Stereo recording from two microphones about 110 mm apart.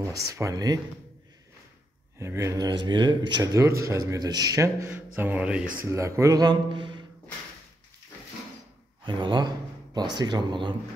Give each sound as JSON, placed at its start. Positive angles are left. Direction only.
{"t": 0.0, "sound": "speech", "side_deg": -30}
{"t": 2.1, "sound": "speech", "side_deg": -25}
{"t": 3.6, "sound": "speech", "side_deg": -25}
{"t": 4.9, "sound": "speech", "side_deg": -15}
{"t": 5.9, "sound": "speech", "side_deg": -25}
{"t": 9.0, "sound": "speech", "side_deg": -45}